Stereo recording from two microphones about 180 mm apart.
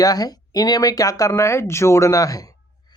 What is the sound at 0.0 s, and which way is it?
Speech, 20° left (ahead or behind).